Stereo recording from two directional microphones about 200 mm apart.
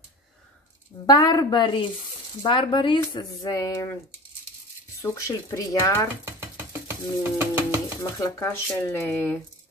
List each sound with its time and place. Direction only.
1.0 s speech: 20° left (ahead or behind)
5.0 s speech: 15° left (ahead or behind)
6.2 s sewing machine: 10° right (ahead or behind)
8.0 s speech: 15° left (ahead or behind)